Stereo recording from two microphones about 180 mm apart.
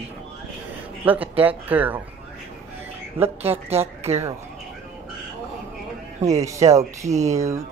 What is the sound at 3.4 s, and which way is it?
Speech, 35° right (ahead or behind).